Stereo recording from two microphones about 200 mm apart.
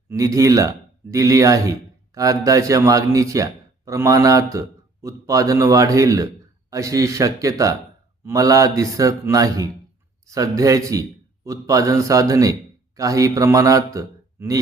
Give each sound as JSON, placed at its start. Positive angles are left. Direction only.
{"t": 0.1, "sound": "a man's voice", "side_deg": -15}